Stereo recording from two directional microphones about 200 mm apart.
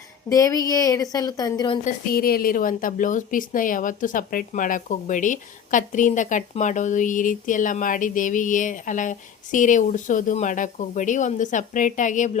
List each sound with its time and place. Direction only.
0.3 s a woman's voice: 15° left (ahead or behind)
1.8 s a woman's voice: 50° left (ahead or behind)